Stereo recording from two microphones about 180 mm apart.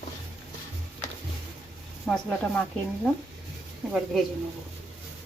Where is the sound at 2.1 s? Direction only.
5° left (ahead or behind).